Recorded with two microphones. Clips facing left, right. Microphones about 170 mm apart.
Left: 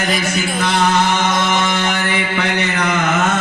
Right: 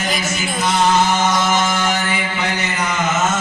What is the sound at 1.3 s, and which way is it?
Music, 55° left (ahead or behind).